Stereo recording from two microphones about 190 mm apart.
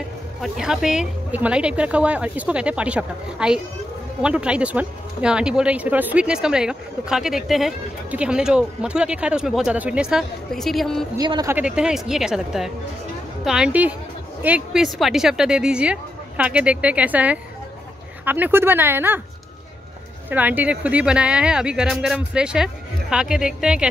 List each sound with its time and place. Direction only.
0.4 s speech: centre (ahead or behind)
11.1 s speech: 20° right (ahead or behind)
11.5 s speech: 5° right (ahead or behind)
20.2 s speech: 10° right (ahead or behind)